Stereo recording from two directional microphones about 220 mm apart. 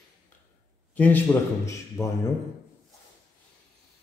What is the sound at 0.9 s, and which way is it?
A man's voice, 10° left (ahead or behind).